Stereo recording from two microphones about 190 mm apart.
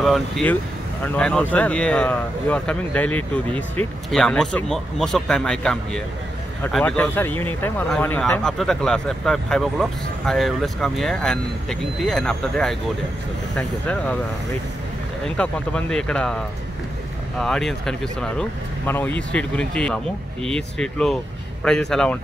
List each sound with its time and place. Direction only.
0.0 s speech: 5° left (ahead or behind)
15.2 s speech: 5° left (ahead or behind)